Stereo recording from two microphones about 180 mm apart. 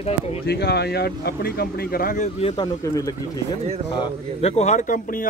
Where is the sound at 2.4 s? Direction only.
25° left (ahead or behind).